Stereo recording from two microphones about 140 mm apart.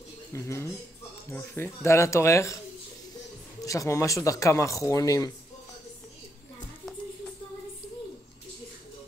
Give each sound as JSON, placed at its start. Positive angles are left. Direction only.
{"t": 0.3, "sound": "speech", "side_deg": 20}
{"t": 3.6, "sound": "speech", "side_deg": 25}